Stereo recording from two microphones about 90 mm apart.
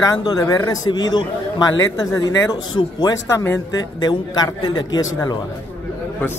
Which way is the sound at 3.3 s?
25° left (ahead or behind).